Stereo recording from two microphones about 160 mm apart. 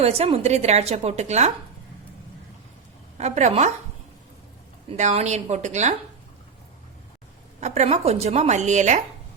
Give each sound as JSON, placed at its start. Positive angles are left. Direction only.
{"t": 0.0, "sound": "a woman's voice", "side_deg": -40}
{"t": 3.2, "sound": "a woman's voice", "side_deg": -45}
{"t": 4.9, "sound": "a woman's voice", "side_deg": -45}
{"t": 7.6, "sound": "a woman's voice", "side_deg": -45}